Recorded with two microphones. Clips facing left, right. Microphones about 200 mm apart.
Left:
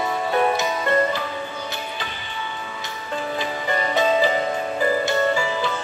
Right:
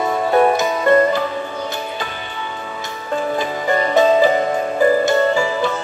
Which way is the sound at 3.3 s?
45° right (ahead or behind).